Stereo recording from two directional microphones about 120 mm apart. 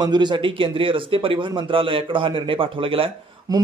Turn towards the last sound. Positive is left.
turn(degrees=-30)  # may be behind; listen again after turning